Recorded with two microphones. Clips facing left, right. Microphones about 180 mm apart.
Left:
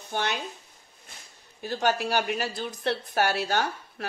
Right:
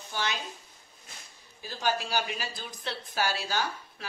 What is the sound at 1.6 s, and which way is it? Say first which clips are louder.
Speech: left 5 dB; 60° left (ahead or behind).